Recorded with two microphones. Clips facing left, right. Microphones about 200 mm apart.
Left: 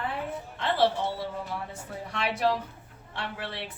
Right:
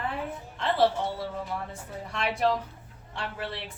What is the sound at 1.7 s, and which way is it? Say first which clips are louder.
A woman's voice: even; centre (ahead or behind).